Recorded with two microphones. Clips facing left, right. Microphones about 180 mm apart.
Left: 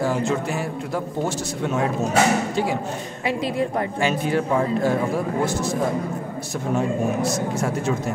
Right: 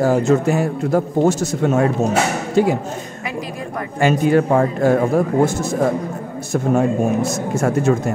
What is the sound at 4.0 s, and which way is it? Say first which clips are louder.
Speech: right 9 dB; 50° right (ahead or behind).